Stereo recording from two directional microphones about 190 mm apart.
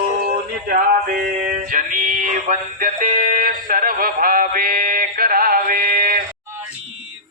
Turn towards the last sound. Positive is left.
turn(degrees=-50)  # may be behind; listen again after turning